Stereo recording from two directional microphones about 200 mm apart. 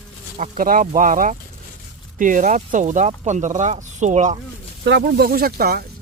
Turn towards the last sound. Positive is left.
turn(degrees=-50)  # may be behind; listen again after turning